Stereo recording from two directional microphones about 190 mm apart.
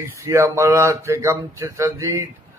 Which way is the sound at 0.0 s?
15° right (ahead or behind).